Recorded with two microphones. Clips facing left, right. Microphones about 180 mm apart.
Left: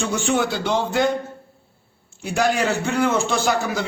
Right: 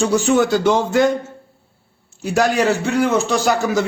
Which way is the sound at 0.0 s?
40° right (ahead or behind).